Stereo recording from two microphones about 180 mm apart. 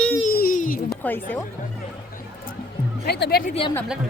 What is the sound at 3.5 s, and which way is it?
Speech, 30° left (ahead or behind).